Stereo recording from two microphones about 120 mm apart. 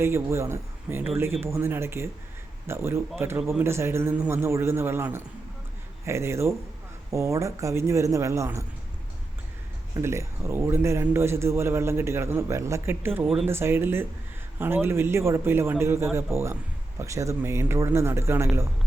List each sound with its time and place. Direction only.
0.0 s a man's voice: 20° right (ahead or behind)
9.9 s a man's voice: 25° right (ahead or behind)